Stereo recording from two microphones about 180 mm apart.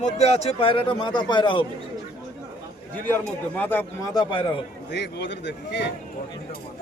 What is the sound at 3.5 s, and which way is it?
Speech, 10° left (ahead or behind).